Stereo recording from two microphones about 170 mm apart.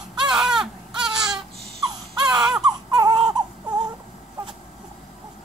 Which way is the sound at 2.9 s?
25° right (ahead or behind).